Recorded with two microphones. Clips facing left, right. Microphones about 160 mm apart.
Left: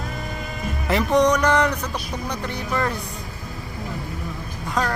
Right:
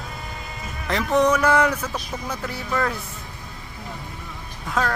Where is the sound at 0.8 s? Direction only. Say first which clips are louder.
Left 1 dB; centre (ahead or behind).